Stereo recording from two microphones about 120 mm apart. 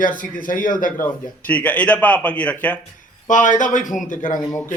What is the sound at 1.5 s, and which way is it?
Speech, 10° left (ahead or behind).